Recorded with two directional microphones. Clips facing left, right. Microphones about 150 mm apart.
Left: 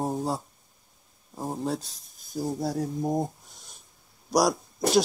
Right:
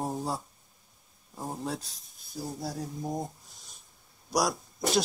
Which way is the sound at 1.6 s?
Centre (ahead or behind).